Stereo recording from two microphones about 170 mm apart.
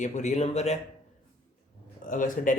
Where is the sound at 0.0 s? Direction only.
45° left (ahead or behind).